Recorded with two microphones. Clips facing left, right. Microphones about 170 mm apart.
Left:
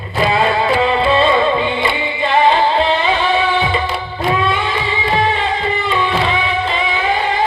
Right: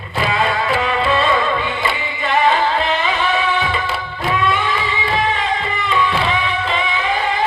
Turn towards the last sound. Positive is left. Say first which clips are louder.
# left 2 dB
turn(degrees=30)  # may be behind; listen again after turning